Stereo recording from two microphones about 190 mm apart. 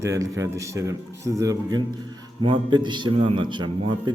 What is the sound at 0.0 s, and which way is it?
A man's voice, 15° right (ahead or behind).